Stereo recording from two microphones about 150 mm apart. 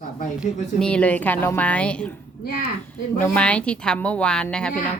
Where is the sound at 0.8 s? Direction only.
5° left (ahead or behind).